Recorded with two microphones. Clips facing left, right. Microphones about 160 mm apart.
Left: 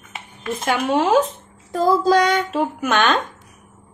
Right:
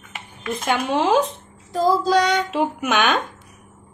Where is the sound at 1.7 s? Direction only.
55° left (ahead or behind).